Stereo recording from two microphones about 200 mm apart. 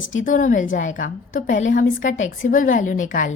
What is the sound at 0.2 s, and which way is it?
A woman's voice, 40° left (ahead or behind).